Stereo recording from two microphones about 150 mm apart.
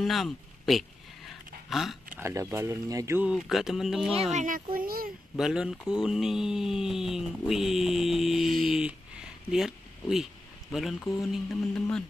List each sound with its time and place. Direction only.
0.0 s a sound: centre (ahead or behind)
2.1 s speech: 15° right (ahead or behind)
3.2 s speech: 5° right (ahead or behind)
4.3 s a child's voice: 60° right (ahead or behind)
4.7 s a child's voice: 75° right (ahead or behind)
5.4 s speech: 5° right (ahead or behind)